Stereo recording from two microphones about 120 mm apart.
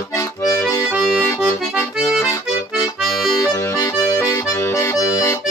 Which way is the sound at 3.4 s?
25° left (ahead or behind).